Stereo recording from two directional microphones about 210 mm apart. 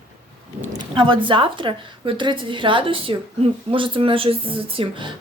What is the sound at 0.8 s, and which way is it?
A woman's voice, 25° right (ahead or behind).